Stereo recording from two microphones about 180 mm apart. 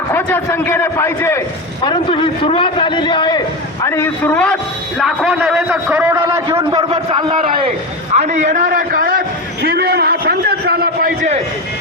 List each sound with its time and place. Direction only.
0.1 s a man's voice: 10° left (ahead or behind)
1.8 s a man's voice: 25° left (ahead or behind); by 7.5 s 30° right (ahead or behind)
8.1 s a man's voice: 40° right (ahead or behind)
9.6 s a sound: 60° right (ahead or behind)